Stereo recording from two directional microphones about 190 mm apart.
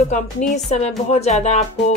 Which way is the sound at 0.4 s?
35° left (ahead or behind).